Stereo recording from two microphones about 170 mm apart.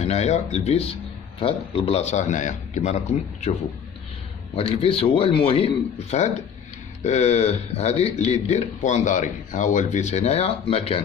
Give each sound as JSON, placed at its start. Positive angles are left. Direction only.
{"t": 0.0, "sound": "a man's voice", "side_deg": 40}
{"t": 4.6, "sound": "a man's voice", "side_deg": 35}